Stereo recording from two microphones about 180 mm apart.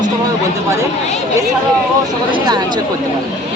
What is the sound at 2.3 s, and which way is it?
Speech, 25° right (ahead or behind).